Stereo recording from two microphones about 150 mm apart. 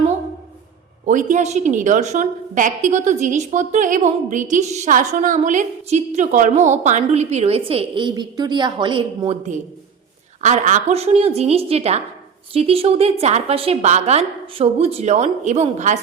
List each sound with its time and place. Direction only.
1.0 s a woman's voice: 55° right (ahead or behind); by 9.4 s 35° right (ahead or behind)
10.4 s a woman's voice: 50° right (ahead or behind)